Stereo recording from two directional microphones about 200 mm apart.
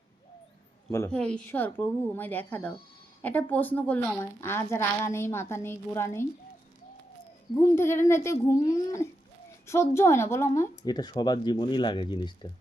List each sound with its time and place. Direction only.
0.9 s a woman's voice: 15° left (ahead or behind)
7.5 s a woman's voice: 15° left (ahead or behind)